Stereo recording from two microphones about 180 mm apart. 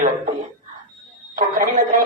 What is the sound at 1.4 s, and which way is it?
Speech, 45° right (ahead or behind).